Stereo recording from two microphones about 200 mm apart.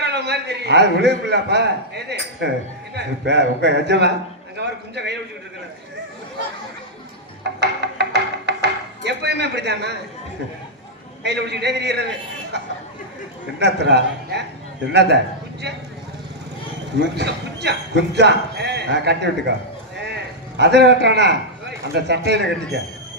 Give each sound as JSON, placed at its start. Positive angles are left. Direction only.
{"t": 0.0, "sound": "a man's voice", "side_deg": -55}
{"t": 7.4, "sound": "music", "side_deg": -55}
{"t": 11.2, "sound": "a man's voice", "side_deg": -55}
{"t": 17.0, "sound": "a man's voice", "side_deg": -55}
{"t": 20.6, "sound": "a man's voice", "side_deg": -55}